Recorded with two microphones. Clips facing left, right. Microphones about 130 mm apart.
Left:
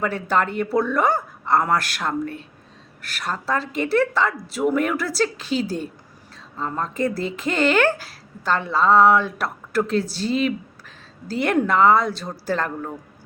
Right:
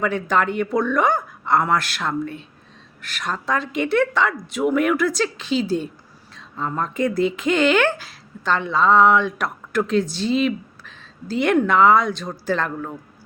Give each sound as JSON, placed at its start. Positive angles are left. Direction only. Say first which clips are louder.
{"t": 0.0, "sound": "speech", "louder": "right 1 dB", "side_deg": 40}
{"t": 1.1, "sound": "a sound", "louder": "right 1 dB", "side_deg": 0}
{"t": 1.6, "sound": "speech", "louder": "right 1 dB", "side_deg": 40}